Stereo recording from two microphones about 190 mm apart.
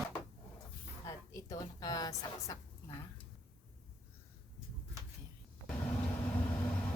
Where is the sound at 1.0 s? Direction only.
20° left (ahead or behind).